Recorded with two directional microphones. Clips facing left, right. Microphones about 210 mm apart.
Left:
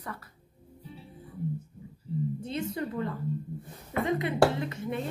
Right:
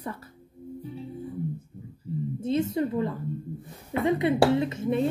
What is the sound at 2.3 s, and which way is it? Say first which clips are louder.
Speech: right 7 dB; 25° right (ahead or behind).